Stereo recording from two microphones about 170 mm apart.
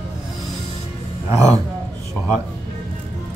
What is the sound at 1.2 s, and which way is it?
Speech, 20° right (ahead or behind).